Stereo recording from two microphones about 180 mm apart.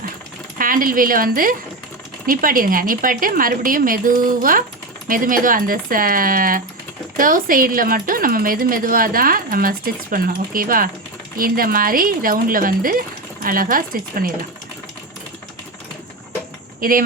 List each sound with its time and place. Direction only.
0.6 s speech: 50° right (ahead or behind)
16.8 s speech: 50° right (ahead or behind)